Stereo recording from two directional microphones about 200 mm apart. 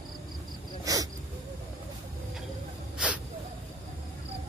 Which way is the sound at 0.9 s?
15° right (ahead or behind).